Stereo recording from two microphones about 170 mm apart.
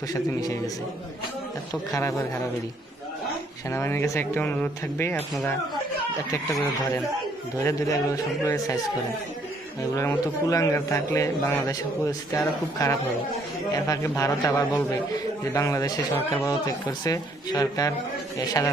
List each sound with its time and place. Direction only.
0.1 s a man's voice: 20° left (ahead or behind)
1.9 s speech: 20° left (ahead or behind)
3.7 s speech: 15° left (ahead or behind)
6.3 s a man's voice: 15° left (ahead or behind)
9.9 s a man's voice: 20° left (ahead or behind)
15.5 s a man's voice: 20° left (ahead or behind)